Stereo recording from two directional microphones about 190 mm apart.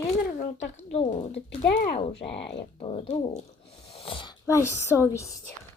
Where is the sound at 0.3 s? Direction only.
35° left (ahead or behind).